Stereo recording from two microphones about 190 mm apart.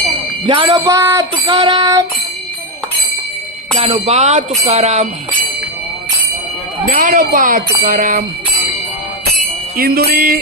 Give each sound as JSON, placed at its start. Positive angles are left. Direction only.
{"t": 0.4, "sound": "music", "side_deg": -25}
{"t": 3.8, "sound": "bell", "side_deg": -35}
{"t": 6.9, "sound": "bell", "side_deg": -45}
{"t": 9.7, "sound": "bell", "side_deg": -50}